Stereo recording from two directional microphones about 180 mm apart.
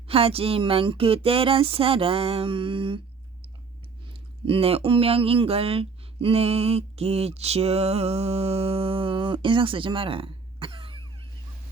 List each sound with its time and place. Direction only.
0.1 s speech: 30° right (ahead or behind)
4.4 s speech: 30° right (ahead or behind)